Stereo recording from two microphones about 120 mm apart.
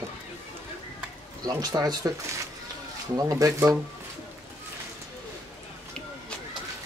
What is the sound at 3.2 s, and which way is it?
Speech, 30° right (ahead or behind).